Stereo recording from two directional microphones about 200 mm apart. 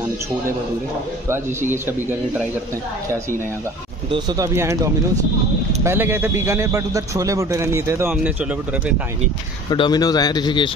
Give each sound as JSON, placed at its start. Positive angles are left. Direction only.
{"t": 1.3, "sound": "a man's voice", "side_deg": -10}
{"t": 4.1, "sound": "a man's voice", "side_deg": -20}
{"t": 5.9, "sound": "a man's voice", "side_deg": -10}
{"t": 9.7, "sound": "a man's voice", "side_deg": 20}